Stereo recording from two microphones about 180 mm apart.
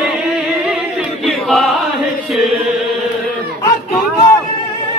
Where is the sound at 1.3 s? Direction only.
Centre (ahead or behind).